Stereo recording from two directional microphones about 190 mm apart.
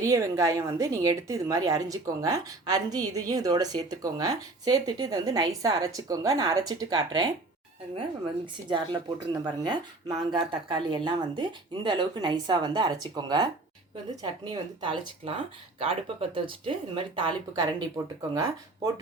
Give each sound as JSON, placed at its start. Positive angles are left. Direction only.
{"t": 0.0, "sound": "a woman's voice", "side_deg": -15}
{"t": 8.7, "sound": "a woman's voice", "side_deg": -25}